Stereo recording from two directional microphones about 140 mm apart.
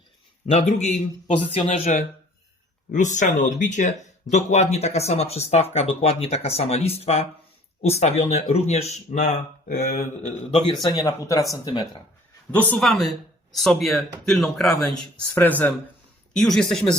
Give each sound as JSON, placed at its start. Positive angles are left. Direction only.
{"t": 0.5, "sound": "speech", "side_deg": 55}
{"t": 2.9, "sound": "speech", "side_deg": 60}
{"t": 10.8, "sound": "speech", "side_deg": 25}
{"t": 12.5, "sound": "a man's voice", "side_deg": 10}
{"t": 15.4, "sound": "a man's voice", "side_deg": 15}